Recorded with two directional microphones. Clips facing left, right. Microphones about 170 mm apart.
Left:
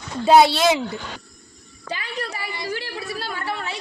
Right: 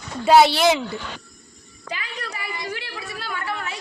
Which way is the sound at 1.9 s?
35° left (ahead or behind).